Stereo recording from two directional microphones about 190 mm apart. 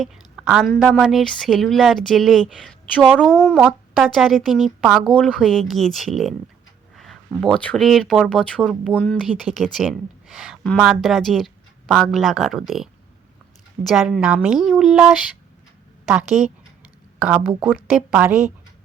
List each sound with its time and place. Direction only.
0.0 s a woman's voice: 5° right (ahead or behind)